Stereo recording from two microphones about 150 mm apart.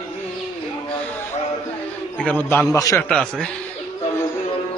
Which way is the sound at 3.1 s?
5° left (ahead or behind).